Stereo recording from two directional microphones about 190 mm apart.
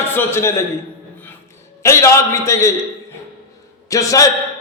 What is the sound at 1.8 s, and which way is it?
Speech, 15° left (ahead or behind).